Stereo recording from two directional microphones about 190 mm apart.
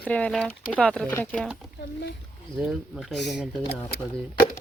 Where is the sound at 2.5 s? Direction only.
Centre (ahead or behind).